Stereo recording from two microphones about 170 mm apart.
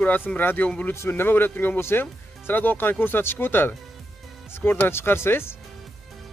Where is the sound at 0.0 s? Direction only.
10° left (ahead or behind).